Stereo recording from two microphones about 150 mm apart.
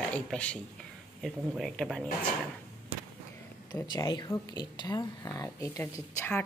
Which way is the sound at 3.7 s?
25° left (ahead or behind).